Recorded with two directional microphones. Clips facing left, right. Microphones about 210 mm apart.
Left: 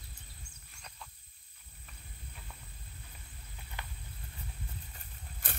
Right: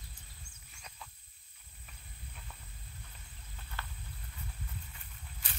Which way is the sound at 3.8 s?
15° left (ahead or behind).